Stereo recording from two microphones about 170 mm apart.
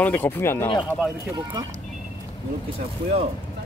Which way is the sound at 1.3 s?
20° right (ahead or behind).